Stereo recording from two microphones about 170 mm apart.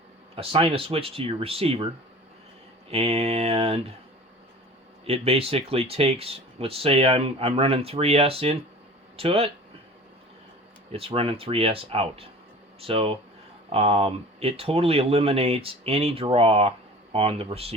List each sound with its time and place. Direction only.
0.3 s speech: 35° right (ahead or behind)
2.9 s speech: 35° right (ahead or behind)
5.0 s speech: 35° right (ahead or behind)
10.9 s speech: 35° right (ahead or behind)